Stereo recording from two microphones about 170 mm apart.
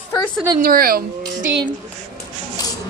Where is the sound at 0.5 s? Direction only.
55° right (ahead or behind).